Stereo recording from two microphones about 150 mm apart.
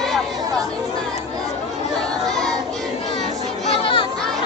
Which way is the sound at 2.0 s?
5° left (ahead or behind).